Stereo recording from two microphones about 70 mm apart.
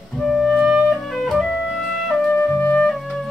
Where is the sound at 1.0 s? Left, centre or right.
Centre.